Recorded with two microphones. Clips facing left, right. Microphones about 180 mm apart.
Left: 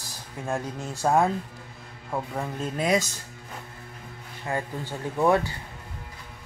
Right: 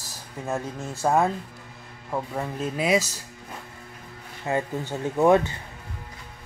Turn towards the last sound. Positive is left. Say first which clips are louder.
# right 3 dB
turn(degrees=-20)  # may be behind; listen again after turning